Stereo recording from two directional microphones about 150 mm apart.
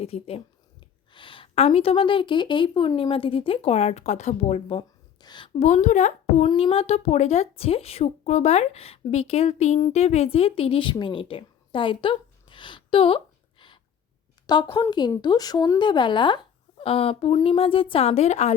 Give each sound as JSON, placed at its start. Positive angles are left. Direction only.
{"t": 0.0, "sound": "a woman's voice", "side_deg": 40}
{"t": 5.5, "sound": "speech", "side_deg": 50}
{"t": 6.5, "sound": "speech", "side_deg": 40}
{"t": 10.9, "sound": "a sound", "side_deg": 35}
{"t": 14.4, "sound": "a woman's voice", "side_deg": 30}